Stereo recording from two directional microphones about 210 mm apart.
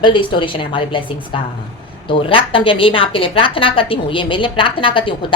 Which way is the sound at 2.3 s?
25° left (ahead or behind).